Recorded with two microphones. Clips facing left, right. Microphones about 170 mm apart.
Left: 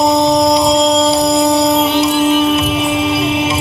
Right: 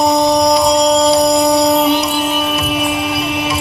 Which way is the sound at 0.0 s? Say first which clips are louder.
Left 1 dB; 20° left (ahead or behind).